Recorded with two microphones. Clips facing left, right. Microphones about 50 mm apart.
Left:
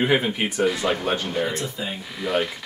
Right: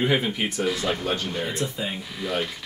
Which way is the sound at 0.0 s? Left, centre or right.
Centre.